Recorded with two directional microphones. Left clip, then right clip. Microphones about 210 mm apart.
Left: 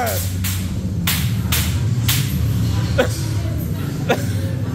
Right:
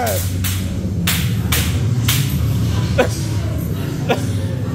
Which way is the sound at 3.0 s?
Centre (ahead or behind).